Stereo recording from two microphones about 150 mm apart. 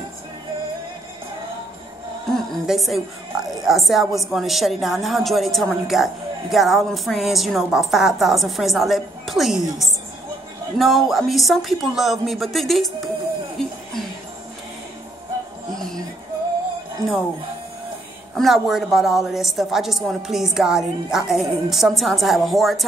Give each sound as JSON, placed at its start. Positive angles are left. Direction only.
{"t": 2.3, "sound": "a woman's voice", "side_deg": 0}
{"t": 13.6, "sound": "music", "side_deg": 5}
{"t": 15.7, "sound": "a sound", "side_deg": 5}
{"t": 17.0, "sound": "speech", "side_deg": -20}
{"t": 18.3, "sound": "a woman's voice", "side_deg": 0}